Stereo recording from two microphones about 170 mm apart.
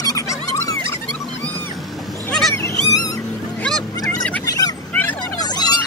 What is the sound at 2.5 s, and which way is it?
Goose, 15° left (ahead or behind).